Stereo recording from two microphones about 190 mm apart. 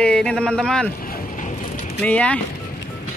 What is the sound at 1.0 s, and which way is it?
Boat, 45° left (ahead or behind).